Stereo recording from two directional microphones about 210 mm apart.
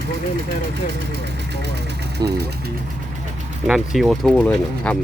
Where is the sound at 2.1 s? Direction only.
50° right (ahead or behind).